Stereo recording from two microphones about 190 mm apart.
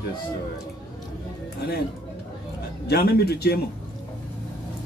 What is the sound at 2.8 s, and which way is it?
Speech, 55° left (ahead or behind).